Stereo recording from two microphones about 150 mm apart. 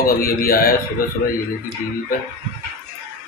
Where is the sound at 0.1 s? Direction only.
80° left.